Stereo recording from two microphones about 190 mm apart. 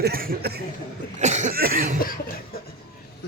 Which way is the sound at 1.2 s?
40° right (ahead or behind).